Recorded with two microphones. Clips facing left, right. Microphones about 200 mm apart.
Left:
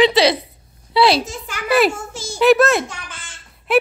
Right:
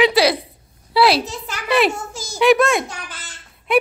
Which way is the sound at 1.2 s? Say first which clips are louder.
Right 1 dB; 35° right (ahead or behind).